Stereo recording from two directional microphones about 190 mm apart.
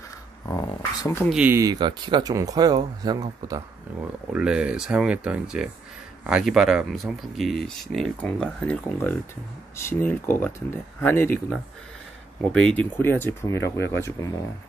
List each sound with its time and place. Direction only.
0.5 s speech: 15° left (ahead or behind)
1.3 s speech: 10° right (ahead or behind)
4.3 s speech: 5° right (ahead or behind); by 14.3 s 15° left (ahead or behind)